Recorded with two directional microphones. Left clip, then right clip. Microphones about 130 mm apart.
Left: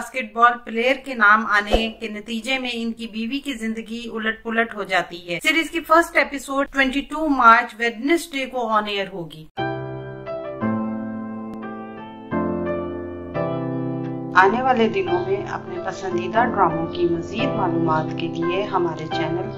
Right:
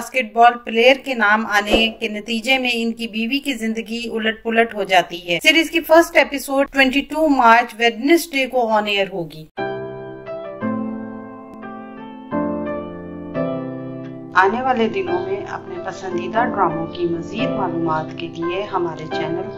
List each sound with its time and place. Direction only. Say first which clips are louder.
0.1 s a woman's voice: right 4 dB; 20° right (ahead or behind)
14.3 s a woman's voice: even; centre (ahead or behind)